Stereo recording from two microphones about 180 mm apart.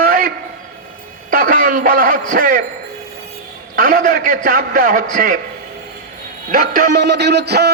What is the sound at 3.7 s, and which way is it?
A man's voice, 50° right (ahead or behind).